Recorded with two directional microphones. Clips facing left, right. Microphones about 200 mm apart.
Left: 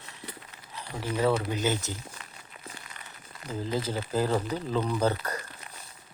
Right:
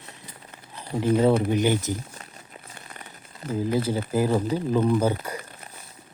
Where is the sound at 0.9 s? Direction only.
30° right (ahead or behind).